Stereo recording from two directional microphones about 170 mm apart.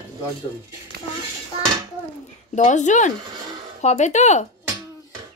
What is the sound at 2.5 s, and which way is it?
A child's voice, 45° left (ahead or behind).